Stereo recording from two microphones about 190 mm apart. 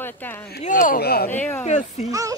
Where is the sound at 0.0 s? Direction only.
10° left (ahead or behind).